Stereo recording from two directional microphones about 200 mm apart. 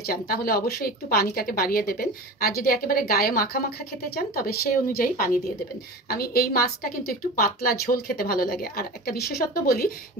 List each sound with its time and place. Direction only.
0.0 s speech: 50° left (ahead or behind)